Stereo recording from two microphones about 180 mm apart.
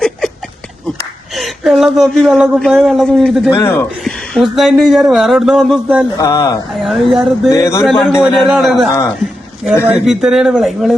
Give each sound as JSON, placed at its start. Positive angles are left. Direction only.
{"t": 1.4, "sound": "speech", "side_deg": 0}
{"t": 3.5, "sound": "speech", "side_deg": 15}
{"t": 4.0, "sound": "speech", "side_deg": 0}
{"t": 6.1, "sound": "speech", "side_deg": 15}
{"t": 6.7, "sound": "speech", "side_deg": 0}
{"t": 7.5, "sound": "speech", "side_deg": 15}
{"t": 7.9, "sound": "speech", "side_deg": 0}
{"t": 8.9, "sound": "speech", "side_deg": 20}
{"t": 9.8, "sound": "speech", "side_deg": -5}